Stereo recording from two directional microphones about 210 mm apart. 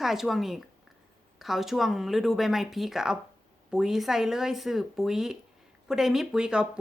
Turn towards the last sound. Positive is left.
turn(degrees=-5)  # may be behind; listen again after turning